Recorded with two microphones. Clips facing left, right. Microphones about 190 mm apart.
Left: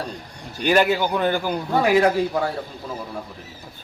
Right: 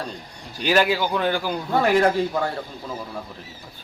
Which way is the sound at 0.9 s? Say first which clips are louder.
Left 1 dB; 10° left (ahead or behind).